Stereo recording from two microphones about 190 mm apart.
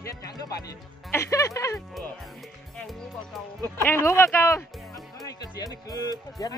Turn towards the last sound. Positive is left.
turn(degrees=20)  # may be behind; listen again after turning